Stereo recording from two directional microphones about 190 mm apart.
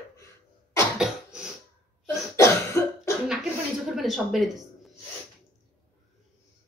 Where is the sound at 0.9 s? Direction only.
5° right (ahead or behind).